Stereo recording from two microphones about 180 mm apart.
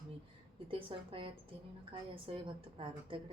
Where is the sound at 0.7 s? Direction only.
30° right (ahead or behind).